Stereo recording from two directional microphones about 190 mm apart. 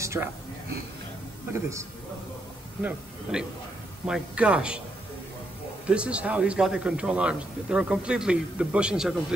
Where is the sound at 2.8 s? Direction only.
5° right (ahead or behind).